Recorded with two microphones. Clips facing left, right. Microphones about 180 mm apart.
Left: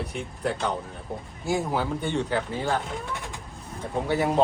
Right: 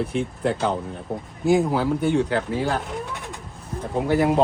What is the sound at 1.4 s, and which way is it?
Speech, 20° right (ahead or behind).